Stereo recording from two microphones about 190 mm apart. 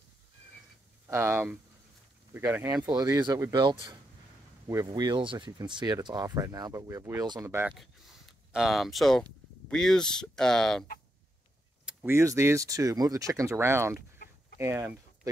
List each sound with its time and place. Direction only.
1.0 s speech: 10° right (ahead or behind)
7.7 s speech: centre (ahead or behind)